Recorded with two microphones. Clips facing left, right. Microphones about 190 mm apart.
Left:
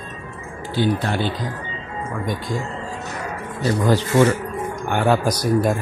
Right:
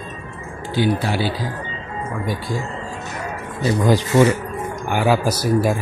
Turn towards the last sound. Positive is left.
turn(degrees=-5)  # may be behind; listen again after turning